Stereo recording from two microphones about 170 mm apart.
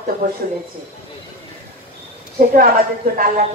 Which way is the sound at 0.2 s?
55° right (ahead or behind).